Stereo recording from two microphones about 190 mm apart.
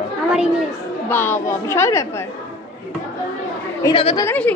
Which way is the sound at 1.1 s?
10° left (ahead or behind).